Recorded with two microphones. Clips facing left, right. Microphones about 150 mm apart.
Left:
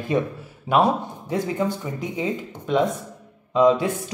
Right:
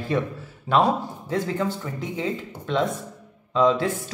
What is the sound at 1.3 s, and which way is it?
Speech, 15° left (ahead or behind).